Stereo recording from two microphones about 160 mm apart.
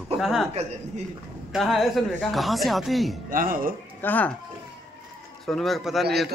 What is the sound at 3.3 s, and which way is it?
Speech, 60° right (ahead or behind).